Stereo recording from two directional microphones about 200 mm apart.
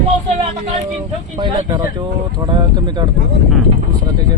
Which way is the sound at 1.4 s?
20° right (ahead or behind).